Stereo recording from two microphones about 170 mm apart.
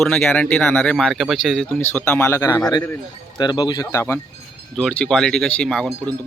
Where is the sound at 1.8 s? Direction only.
10° left (ahead or behind).